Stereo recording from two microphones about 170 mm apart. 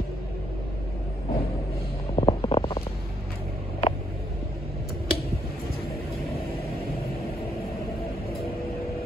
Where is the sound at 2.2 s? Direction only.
30° left (ahead or behind).